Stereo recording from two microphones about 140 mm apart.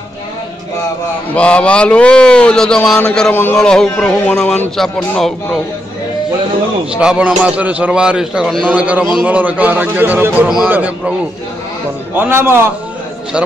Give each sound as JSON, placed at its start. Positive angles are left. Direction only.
{"t": 1.3, "sound": "a man's voice", "side_deg": 10}
{"t": 6.9, "sound": "a man's voice", "side_deg": -5}
{"t": 8.7, "sound": "a man's voice", "side_deg": -10}
{"t": 12.2, "sound": "a man's voice", "side_deg": -15}